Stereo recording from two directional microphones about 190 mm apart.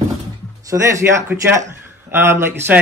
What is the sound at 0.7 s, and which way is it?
Speech, 15° right (ahead or behind).